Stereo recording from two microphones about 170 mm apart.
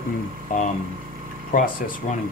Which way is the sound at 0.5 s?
50° left (ahead or behind).